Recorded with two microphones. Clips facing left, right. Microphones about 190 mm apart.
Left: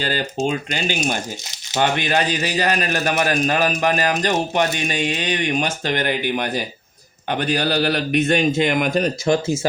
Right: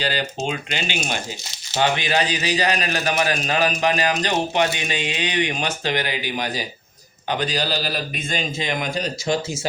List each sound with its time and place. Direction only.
0.0 s a man's voice: 45° left (ahead or behind)